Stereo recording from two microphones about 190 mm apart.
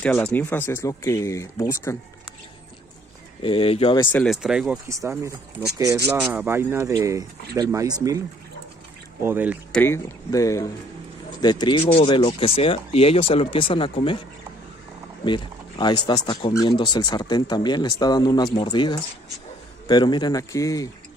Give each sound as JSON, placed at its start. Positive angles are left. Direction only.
{"t": 0.0, "sound": "speech", "side_deg": 10}
{"t": 3.4, "sound": "speech", "side_deg": 30}
{"t": 4.1, "sound": "speech", "side_deg": 0}
{"t": 4.8, "sound": "speech", "side_deg": -15}
{"t": 9.2, "sound": "speech", "side_deg": -10}
{"t": 9.7, "sound": "speech", "side_deg": 10}
{"t": 15.2, "sound": "speech", "side_deg": 25}